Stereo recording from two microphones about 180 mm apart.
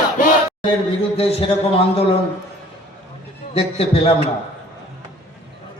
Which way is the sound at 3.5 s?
30° left (ahead or behind).